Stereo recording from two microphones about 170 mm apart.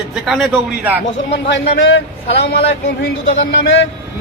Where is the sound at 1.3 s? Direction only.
90° left.